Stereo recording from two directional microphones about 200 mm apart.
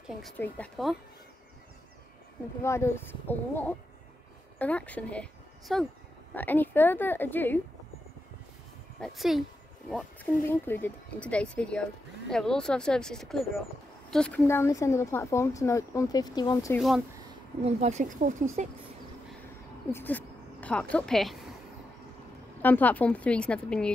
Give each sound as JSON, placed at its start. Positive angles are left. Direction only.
{"t": 0.4, "sound": "speech", "side_deg": 5}
{"t": 2.6, "sound": "speech", "side_deg": 15}
{"t": 9.0, "sound": "speech", "side_deg": 0}
{"t": 10.5, "sound": "speech", "side_deg": 10}
{"t": 16.7, "sound": "speech", "side_deg": 0}
{"t": 17.6, "sound": "speech", "side_deg": -35}
{"t": 19.9, "sound": "a sound", "side_deg": 10}
{"t": 20.9, "sound": "speech", "side_deg": 0}
{"t": 22.6, "sound": "speech", "side_deg": 10}